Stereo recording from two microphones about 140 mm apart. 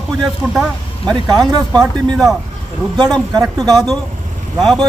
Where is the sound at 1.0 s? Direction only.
30° right (ahead or behind).